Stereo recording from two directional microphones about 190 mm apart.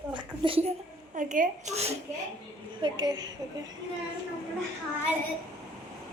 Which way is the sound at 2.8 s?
25° right (ahead or behind).